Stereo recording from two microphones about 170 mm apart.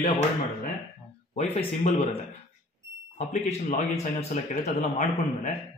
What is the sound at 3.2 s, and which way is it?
Speech, 45° left (ahead or behind).